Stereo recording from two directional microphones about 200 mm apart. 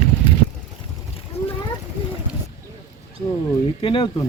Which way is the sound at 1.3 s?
30° left (ahead or behind).